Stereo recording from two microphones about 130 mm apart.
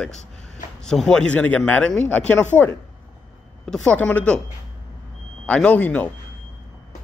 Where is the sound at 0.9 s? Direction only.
5° left (ahead or behind).